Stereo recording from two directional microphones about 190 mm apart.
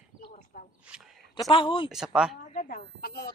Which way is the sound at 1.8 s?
Centre (ahead or behind).